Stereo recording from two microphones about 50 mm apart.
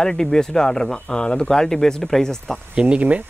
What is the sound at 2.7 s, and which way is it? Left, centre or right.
Speech, right.